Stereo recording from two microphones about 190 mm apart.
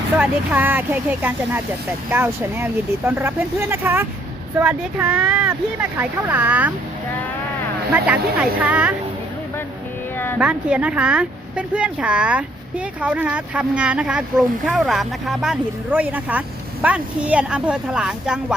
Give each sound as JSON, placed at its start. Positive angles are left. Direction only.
{"t": 0.2, "sound": "speech", "side_deg": -10}
{"t": 7.9, "sound": "speech", "side_deg": -5}
{"t": 10.3, "sound": "speech", "side_deg": -5}